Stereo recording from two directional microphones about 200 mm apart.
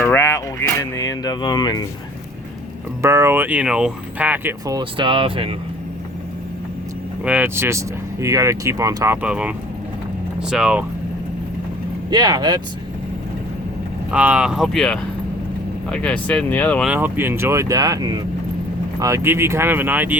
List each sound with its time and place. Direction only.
0.0 s a sound: 10° left (ahead or behind)
0.9 s speech: 15° left (ahead or behind)
3.0 s speech: 15° right (ahead or behind)
7.3 s speech: 10° right (ahead or behind)
9.2 s speech: 5° right (ahead or behind)
12.1 s speech: 20° right (ahead or behind)
14.1 s speech: 5° right (ahead or behind)
16.9 s speech: 10° right (ahead or behind)